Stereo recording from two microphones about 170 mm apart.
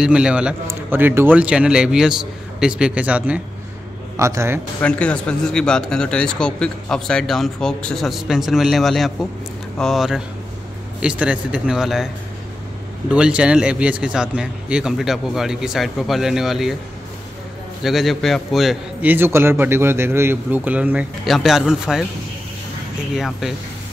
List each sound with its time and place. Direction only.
0.0 s a man's voice: 5° right (ahead or behind)
4.8 s speech: 5° left (ahead or behind)
13.1 s speech: 5° right (ahead or behind)
17.8 s a man's voice: centre (ahead or behind)
23.1 s speech: centre (ahead or behind)